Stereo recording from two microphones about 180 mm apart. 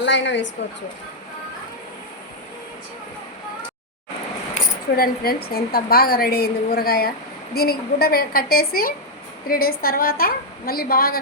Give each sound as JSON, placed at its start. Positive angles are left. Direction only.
{"t": 0.0, "sound": "speech", "side_deg": 85}
{"t": 4.9, "sound": "a woman's voice", "side_deg": 55}